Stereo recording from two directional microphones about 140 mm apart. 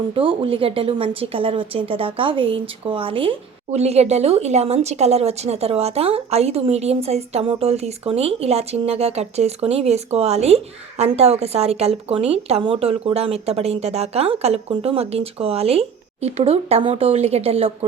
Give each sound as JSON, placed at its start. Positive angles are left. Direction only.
{"t": 0.1, "sound": "speech", "side_deg": -40}